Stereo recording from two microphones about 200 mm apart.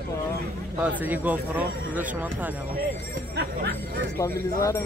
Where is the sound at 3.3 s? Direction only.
60° right (ahead or behind).